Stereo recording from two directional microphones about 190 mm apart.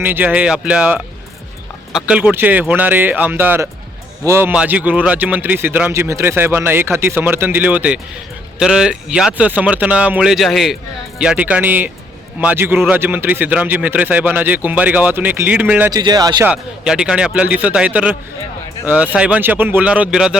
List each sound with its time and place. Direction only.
0.0 s speech: 10° right (ahead or behind)
15.9 s speech: 20° right (ahead or behind)
16.5 s speech: 5° right (ahead or behind)